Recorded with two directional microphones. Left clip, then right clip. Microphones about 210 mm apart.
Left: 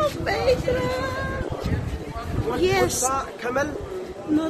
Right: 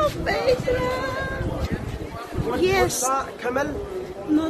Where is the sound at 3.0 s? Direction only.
25° left (ahead or behind).